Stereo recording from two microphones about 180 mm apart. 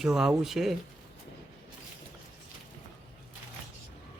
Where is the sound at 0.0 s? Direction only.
5° right (ahead or behind).